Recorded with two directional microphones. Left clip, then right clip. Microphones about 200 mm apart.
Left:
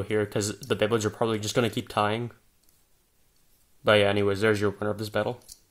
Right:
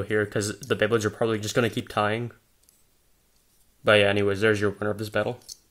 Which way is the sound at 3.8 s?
Centre (ahead or behind).